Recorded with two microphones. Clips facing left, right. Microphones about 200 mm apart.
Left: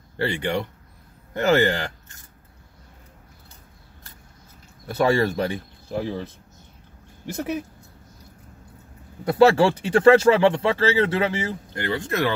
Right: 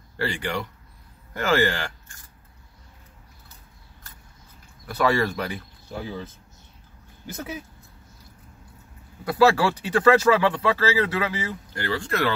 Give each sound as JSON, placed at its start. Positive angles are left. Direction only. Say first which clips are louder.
{"t": 0.2, "sound": "speech", "louder": "left 3 dB", "side_deg": 20}
{"t": 4.8, "sound": "speech", "louder": "left 3 dB", "side_deg": 25}
{"t": 9.2, "sound": "speech", "louder": "left 3 dB", "side_deg": 25}